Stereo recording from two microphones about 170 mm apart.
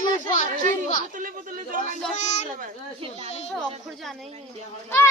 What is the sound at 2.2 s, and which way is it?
Speech, 45° left (ahead or behind).